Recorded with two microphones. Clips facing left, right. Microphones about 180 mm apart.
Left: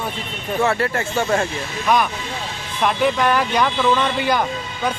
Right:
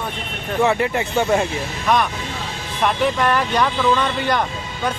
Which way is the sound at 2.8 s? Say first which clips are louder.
Left 1 dB; centre (ahead or behind).